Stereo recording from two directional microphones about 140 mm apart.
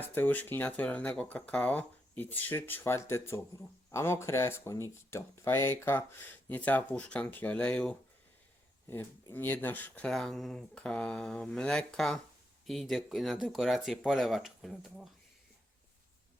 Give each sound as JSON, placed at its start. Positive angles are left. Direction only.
{"t": 0.1, "sound": "speech", "side_deg": 15}